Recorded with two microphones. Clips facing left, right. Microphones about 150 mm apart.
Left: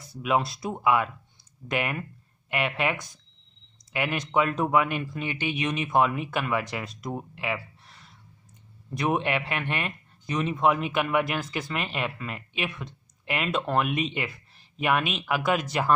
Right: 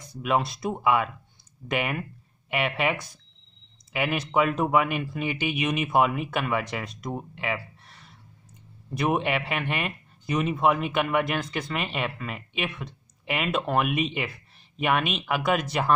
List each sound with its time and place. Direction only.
0.0 s speech: centre (ahead or behind)